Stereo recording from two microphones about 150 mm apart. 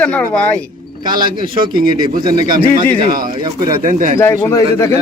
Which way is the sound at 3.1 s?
70° right (ahead or behind).